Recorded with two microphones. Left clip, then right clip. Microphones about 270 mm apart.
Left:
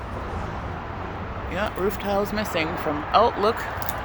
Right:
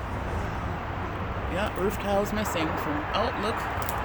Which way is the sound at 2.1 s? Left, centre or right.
Centre.